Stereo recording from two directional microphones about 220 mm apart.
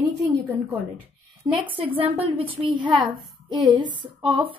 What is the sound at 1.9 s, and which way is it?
Speech, 25° right (ahead or behind).